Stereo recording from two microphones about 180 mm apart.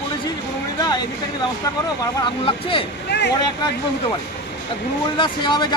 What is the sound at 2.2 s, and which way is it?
Speech, 30° left (ahead or behind).